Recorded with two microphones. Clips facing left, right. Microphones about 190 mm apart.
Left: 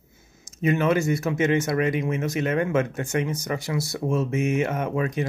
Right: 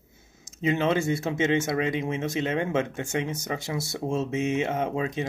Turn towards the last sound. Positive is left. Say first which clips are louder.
# left 2 dB
turn(degrees=-25)  # may be behind; listen again after turning